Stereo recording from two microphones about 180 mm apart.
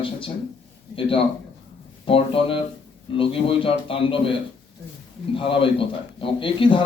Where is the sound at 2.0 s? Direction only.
30° left (ahead or behind).